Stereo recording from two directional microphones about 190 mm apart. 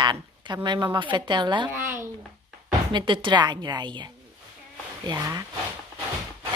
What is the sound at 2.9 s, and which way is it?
Speech, 25° right (ahead or behind).